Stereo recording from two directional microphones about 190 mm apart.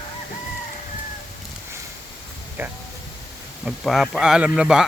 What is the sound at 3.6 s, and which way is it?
A man's voice, centre (ahead or behind).